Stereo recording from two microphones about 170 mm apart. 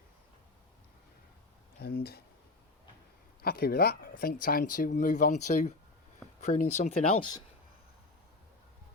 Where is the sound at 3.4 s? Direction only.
60° left (ahead or behind); by 7.2 s 45° left (ahead or behind).